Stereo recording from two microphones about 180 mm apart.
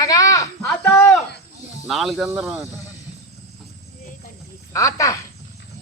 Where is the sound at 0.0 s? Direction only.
20° left (ahead or behind).